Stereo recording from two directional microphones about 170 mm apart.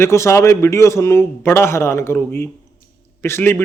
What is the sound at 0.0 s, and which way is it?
Speech, 15° left (ahead or behind).